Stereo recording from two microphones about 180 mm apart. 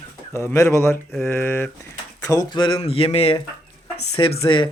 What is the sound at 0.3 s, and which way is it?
Speech, 15° left (ahead or behind).